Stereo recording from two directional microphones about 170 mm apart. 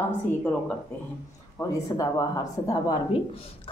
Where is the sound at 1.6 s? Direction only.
20° left (ahead or behind).